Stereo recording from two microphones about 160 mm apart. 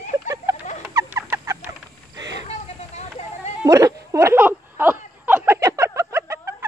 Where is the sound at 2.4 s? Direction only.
45° left (ahead or behind).